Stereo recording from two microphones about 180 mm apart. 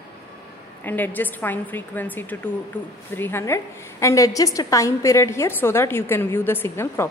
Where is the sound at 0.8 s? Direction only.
10° left (ahead or behind).